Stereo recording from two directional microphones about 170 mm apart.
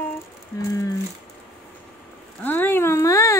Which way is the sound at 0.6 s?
20° left (ahead or behind).